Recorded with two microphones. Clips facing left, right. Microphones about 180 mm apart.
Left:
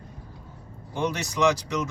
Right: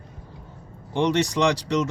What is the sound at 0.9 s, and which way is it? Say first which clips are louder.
Speech: right 7 dB; 75° right (ahead or behind).